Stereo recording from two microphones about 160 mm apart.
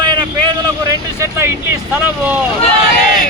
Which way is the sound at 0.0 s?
25° right (ahead or behind).